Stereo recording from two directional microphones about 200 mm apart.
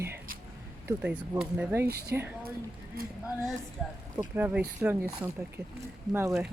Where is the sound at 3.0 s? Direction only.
50° right (ahead or behind).